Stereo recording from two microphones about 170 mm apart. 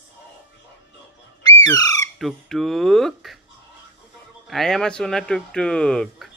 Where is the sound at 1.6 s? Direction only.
20° left (ahead or behind).